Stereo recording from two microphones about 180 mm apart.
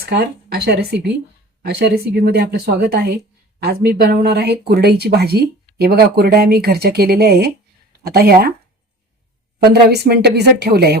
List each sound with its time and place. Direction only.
0.0 s speech: 65° right (ahead or behind)
9.6 s speech: 60° right (ahead or behind)